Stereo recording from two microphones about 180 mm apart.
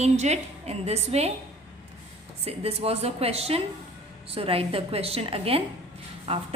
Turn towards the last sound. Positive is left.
turn(degrees=-30)  # may be behind; listen again after turning